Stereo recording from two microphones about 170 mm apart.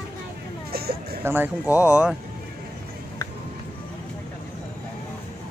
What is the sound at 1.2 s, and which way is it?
Speech, 10° right (ahead or behind).